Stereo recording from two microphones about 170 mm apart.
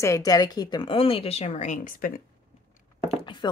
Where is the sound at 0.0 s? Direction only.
20° left (ahead or behind); by 2.2 s 55° left (ahead or behind).